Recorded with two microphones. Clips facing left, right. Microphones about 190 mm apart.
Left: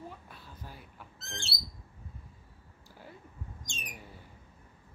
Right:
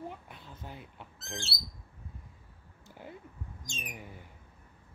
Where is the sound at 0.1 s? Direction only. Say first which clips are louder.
Right 2 dB; 20° right (ahead or behind).